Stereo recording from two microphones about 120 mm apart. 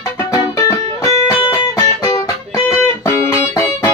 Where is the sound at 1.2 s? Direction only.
30° left (ahead or behind).